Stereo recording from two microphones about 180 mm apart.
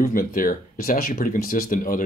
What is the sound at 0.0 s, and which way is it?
Speech, 50° left (ahead or behind).